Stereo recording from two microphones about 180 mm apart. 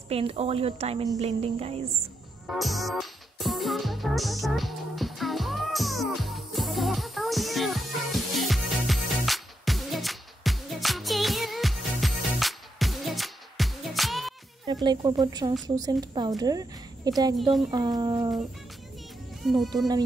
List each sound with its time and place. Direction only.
0.1 s a woman's voice: 35° right (ahead or behind)
2.4 s music: centre (ahead or behind)
14.7 s a woman's voice: 25° right (ahead or behind)
17.4 s speech: centre (ahead or behind)
17.6 s a woman's voice: 20° right (ahead or behind)
19.4 s speech: centre (ahead or behind)